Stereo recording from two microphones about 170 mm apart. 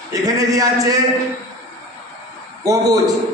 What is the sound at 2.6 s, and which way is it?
Speech, 20° right (ahead or behind).